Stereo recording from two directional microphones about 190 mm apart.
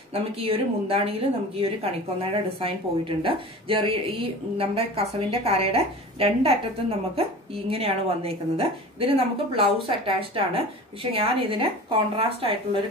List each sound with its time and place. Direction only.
0.1 s a woman's voice: 30° right (ahead or behind)